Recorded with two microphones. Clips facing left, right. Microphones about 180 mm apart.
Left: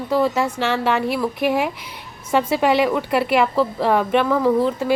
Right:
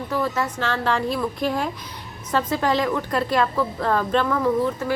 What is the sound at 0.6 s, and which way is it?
Speech, 10° left (ahead or behind).